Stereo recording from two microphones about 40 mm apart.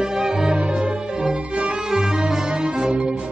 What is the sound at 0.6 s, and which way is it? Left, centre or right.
Music, right.